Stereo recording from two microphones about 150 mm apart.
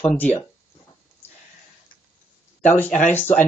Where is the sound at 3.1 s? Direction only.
10° left (ahead or behind).